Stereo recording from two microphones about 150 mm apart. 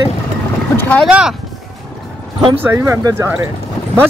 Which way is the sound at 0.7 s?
10° left (ahead or behind).